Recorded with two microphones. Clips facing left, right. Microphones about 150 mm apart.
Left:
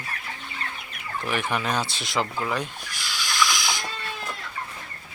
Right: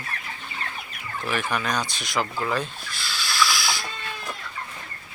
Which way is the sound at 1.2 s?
20° left (ahead or behind).